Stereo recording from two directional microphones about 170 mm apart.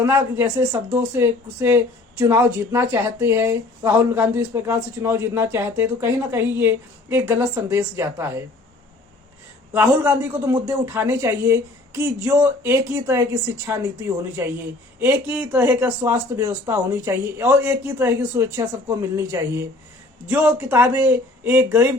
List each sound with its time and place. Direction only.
0.0 s speech: 15° right (ahead or behind)
9.7 s speech: 15° right (ahead or behind)